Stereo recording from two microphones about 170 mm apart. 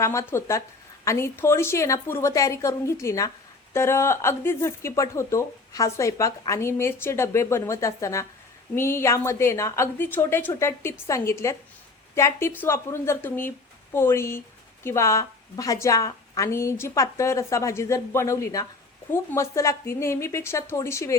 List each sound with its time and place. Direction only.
0.0 s a woman's voice: 15° left (ahead or behind)